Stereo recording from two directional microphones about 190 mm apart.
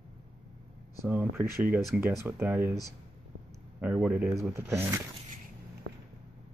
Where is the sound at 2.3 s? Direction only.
10° right (ahead or behind).